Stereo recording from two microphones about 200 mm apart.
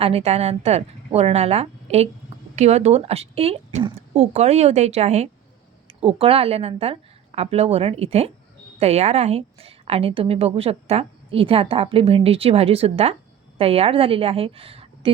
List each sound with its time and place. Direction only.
0.0 s a woman's voice: 30° right (ahead or behind)